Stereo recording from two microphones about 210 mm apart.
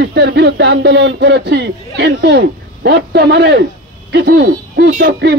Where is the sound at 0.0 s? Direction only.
55° right (ahead or behind).